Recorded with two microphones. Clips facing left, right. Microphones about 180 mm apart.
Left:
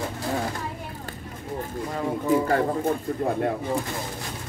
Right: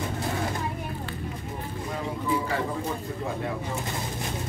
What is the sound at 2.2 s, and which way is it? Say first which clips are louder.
Speech: left 7 dB; 50° left (ahead or behind).